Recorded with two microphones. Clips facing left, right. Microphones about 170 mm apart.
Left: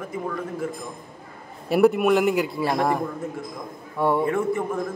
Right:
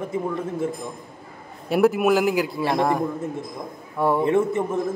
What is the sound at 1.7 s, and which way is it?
Speech, centre (ahead or behind).